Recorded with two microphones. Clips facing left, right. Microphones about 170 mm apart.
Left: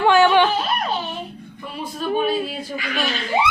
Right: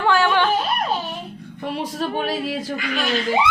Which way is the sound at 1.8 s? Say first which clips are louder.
Left 4 dB; 80° right.